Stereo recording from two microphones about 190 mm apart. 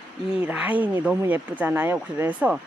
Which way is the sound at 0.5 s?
10° right (ahead or behind).